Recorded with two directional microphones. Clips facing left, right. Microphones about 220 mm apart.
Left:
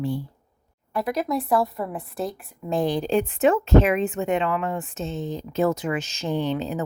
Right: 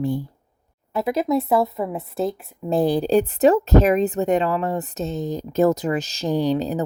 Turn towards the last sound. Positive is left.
turn(degrees=-35)  # may be behind; listen again after turning